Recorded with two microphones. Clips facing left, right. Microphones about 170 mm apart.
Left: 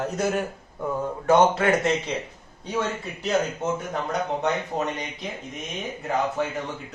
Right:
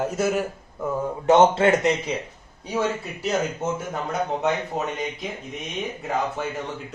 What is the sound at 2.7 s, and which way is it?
Speech, 5° right (ahead or behind).